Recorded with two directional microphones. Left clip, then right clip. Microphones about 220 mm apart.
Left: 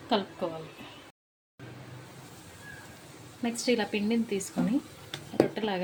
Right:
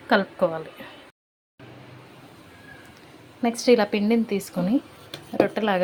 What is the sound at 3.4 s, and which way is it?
Speech, 25° right (ahead or behind).